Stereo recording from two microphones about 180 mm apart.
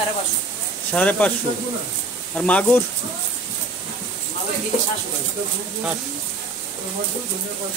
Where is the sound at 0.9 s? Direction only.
10° left (ahead or behind).